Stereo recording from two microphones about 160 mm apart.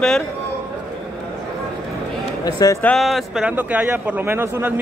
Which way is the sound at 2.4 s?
20° left (ahead or behind).